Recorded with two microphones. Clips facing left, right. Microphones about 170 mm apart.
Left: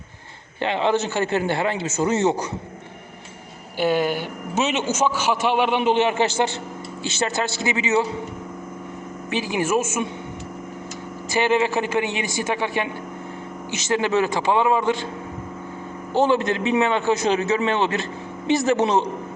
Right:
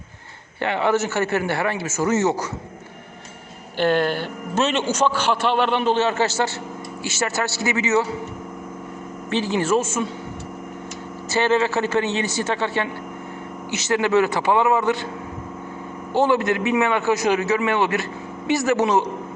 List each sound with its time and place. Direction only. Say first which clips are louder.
0.6 s a man's voice: even; 20° left (ahead or behind)
3.8 s a man's voice: right 1 dB; 10° left (ahead or behind)
9.3 s a man's voice: right 2 dB; 10° left (ahead or behind)
11.3 s a man's voice: even; 15° left (ahead or behind)
16.2 s a man's voice: right 1 dB; 20° left (ahead or behind)